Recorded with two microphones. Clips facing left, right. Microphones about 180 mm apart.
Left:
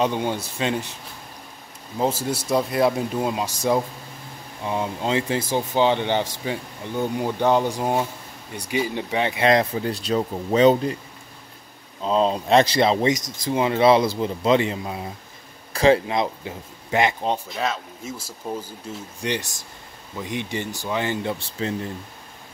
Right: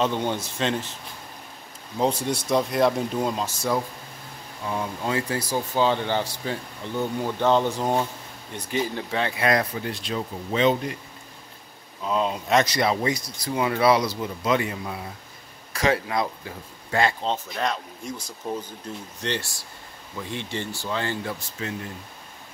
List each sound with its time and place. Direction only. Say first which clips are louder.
0.0 s speech: left 2 dB; 10° left (ahead or behind)
2.0 s speech: even; 5° left (ahead or behind); by 11.0 s 35° left (ahead or behind)
12.0 s speech: left 5 dB; 30° left (ahead or behind)
17.5 s speech: left 1 dB; 5° left (ahead or behind); by 21.7 s 25° left (ahead or behind)